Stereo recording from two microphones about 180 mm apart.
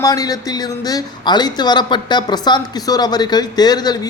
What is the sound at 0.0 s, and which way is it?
Speech, 20° left (ahead or behind).